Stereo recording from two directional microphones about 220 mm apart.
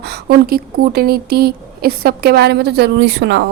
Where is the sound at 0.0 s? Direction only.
45° right (ahead or behind).